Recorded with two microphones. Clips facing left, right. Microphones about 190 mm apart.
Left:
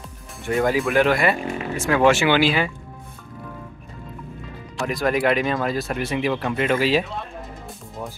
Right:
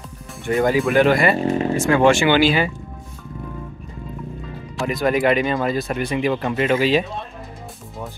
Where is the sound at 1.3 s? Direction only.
35° right (ahead or behind).